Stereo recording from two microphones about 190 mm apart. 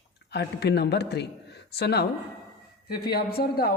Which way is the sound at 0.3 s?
60° left (ahead or behind).